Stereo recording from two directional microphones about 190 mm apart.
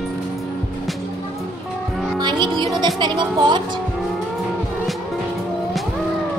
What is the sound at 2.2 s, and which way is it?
Music, 25° right (ahead or behind).